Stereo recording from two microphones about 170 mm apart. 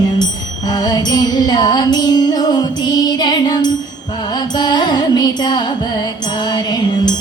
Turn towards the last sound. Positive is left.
turn(degrees=25)  # may be behind; listen again after turning